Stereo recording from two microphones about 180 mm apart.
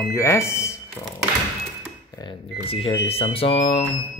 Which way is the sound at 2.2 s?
30° left (ahead or behind).